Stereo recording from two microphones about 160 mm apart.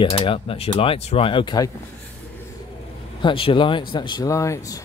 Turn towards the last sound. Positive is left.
turn(degrees=20)  # may be behind; listen again after turning